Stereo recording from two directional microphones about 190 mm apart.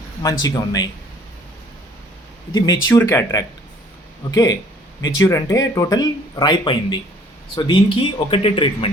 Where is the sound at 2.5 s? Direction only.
20° left (ahead or behind).